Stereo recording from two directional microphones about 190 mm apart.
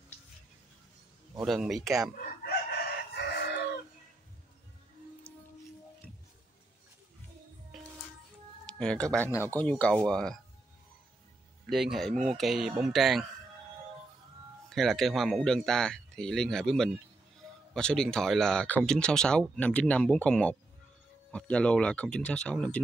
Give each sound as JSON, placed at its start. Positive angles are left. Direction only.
{"t": 1.4, "sound": "speech", "side_deg": 0}
{"t": 3.2, "sound": "chicken", "side_deg": 60}
{"t": 8.6, "sound": "speech", "side_deg": 5}
{"t": 11.6, "sound": "speech", "side_deg": 0}
{"t": 14.7, "sound": "speech", "side_deg": 0}